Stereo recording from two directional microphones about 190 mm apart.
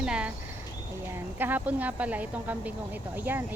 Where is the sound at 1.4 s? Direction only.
10° right (ahead or behind).